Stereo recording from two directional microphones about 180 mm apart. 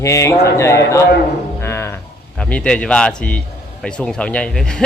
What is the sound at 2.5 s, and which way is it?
Speech, 5° left (ahead or behind).